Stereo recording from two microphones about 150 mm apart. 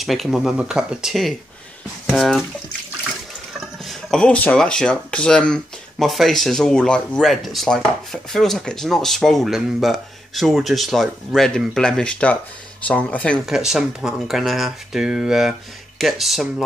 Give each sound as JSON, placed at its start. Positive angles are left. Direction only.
{"t": 0.0, "sound": "speech", "side_deg": 0}
{"t": 3.5, "sound": "speech", "side_deg": 0}